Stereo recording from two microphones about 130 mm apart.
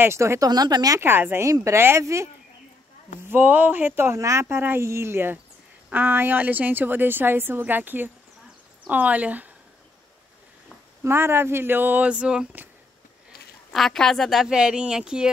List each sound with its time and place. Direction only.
0.0 s speech: 20° right (ahead or behind)
3.3 s a woman's voice: 15° right (ahead or behind)
11.1 s a woman's voice: 20° right (ahead or behind)
13.7 s speech: 5° left (ahead or behind)